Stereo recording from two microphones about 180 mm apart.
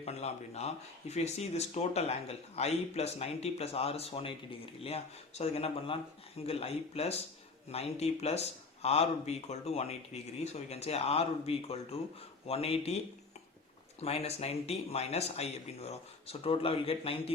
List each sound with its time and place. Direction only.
0.0 s speech: 35° left (ahead or behind)
14.0 s speech: 35° left (ahead or behind)